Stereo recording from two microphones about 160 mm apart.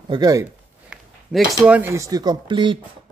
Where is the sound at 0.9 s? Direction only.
5° right (ahead or behind).